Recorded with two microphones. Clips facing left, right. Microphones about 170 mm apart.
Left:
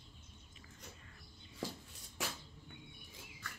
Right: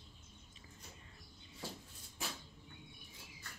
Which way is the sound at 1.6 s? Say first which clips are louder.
Left 5 dB; 90° left.